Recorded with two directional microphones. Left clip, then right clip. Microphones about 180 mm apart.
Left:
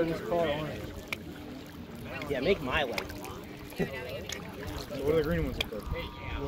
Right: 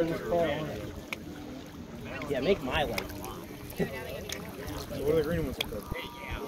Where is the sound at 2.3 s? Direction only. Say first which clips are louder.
Even; 30° left (ahead or behind).